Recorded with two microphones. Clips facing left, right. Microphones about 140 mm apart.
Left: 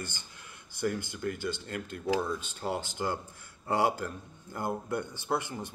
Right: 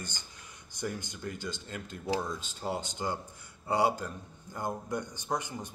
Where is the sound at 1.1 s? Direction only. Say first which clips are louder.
Left 5 dB; 55° left (ahead or behind).